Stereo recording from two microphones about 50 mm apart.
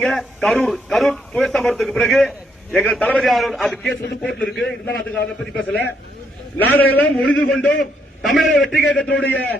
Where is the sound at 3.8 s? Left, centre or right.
Centre.